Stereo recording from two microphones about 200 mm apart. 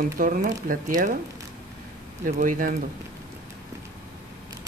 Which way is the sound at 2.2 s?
40° right (ahead or behind).